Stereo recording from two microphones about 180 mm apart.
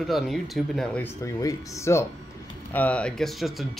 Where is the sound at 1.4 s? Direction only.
15° left (ahead or behind); by 3.7 s centre (ahead or behind).